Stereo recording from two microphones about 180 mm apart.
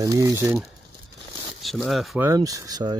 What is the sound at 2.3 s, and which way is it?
Speech, 20° right (ahead or behind).